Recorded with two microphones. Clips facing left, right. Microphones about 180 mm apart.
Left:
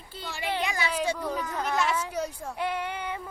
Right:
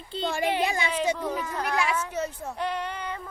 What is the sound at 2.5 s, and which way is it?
Child singing, 10° left (ahead or behind).